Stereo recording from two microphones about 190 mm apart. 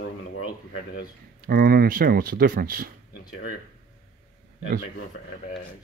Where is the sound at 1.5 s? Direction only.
50° right (ahead or behind).